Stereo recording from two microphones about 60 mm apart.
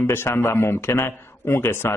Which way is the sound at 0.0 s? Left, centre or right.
Left.